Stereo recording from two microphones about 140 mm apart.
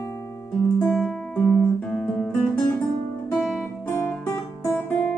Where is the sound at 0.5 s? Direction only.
10° left (ahead or behind).